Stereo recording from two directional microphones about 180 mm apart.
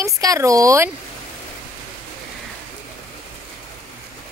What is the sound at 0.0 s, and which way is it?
Speech, 20° right (ahead or behind).